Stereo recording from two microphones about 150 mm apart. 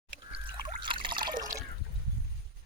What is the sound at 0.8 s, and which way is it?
Water, 35° right (ahead or behind).